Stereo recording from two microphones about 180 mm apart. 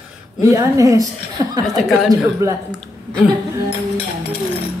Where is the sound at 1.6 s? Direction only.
Centre (ahead or behind).